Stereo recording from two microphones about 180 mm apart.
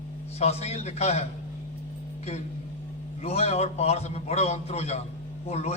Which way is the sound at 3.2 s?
35° left (ahead or behind).